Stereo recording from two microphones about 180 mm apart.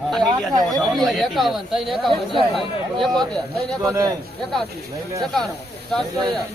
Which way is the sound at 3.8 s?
15° right (ahead or behind).